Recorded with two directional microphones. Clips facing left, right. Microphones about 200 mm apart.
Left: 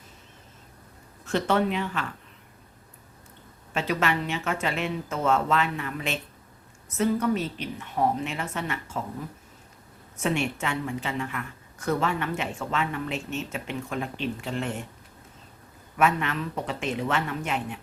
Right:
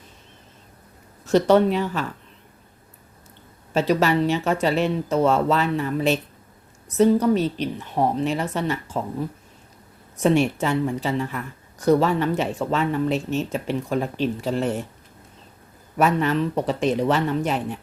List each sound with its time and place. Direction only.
1.2 s speech: 35° right (ahead or behind)
3.8 s speech: 35° right (ahead or behind)
10.2 s speech: 35° right (ahead or behind)
16.0 s speech: 35° right (ahead or behind)